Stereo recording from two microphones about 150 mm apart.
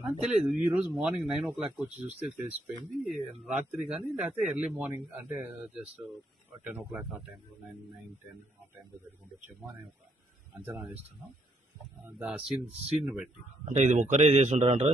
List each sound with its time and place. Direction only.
0.0 s a man's voice: 5° right (ahead or behind)
3.0 s a man's voice: centre (ahead or behind)
10.5 s a man's voice: 10° right (ahead or behind)
12.0 s speech: 5° right (ahead or behind)
13.7 s speech: 55° right (ahead or behind)